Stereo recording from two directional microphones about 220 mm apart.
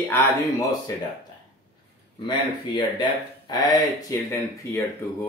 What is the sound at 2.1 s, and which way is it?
Speech, 20° left (ahead or behind).